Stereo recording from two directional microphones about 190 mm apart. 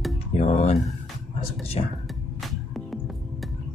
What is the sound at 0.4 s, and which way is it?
Music, 35° left (ahead or behind).